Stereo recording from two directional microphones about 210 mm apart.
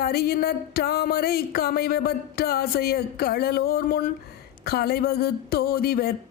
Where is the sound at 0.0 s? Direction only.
45° left (ahead or behind).